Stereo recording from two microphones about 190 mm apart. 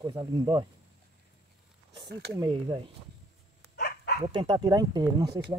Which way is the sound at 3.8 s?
60° left (ahead or behind).